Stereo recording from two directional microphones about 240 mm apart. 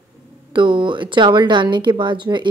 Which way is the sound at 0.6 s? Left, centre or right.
Centre.